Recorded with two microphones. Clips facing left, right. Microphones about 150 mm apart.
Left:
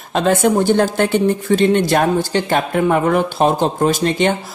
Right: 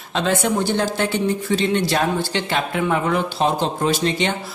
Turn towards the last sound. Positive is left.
turn(degrees=50)  # may be behind; listen again after turning